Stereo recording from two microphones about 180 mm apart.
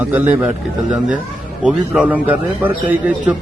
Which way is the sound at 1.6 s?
5° right (ahead or behind).